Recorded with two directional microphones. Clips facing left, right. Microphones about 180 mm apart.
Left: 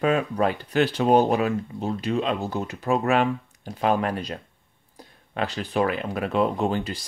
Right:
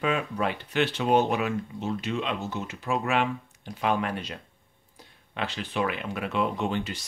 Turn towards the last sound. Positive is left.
turn(degrees=35)  # may be behind; listen again after turning